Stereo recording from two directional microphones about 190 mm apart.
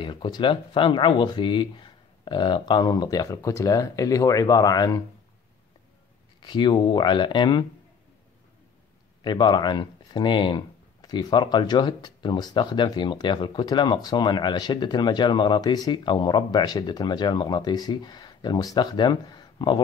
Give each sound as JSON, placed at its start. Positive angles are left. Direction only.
{"t": 0.0, "sound": "speech", "side_deg": 25}
{"t": 6.4, "sound": "speech", "side_deg": 25}
{"t": 9.2, "sound": "speech", "side_deg": 25}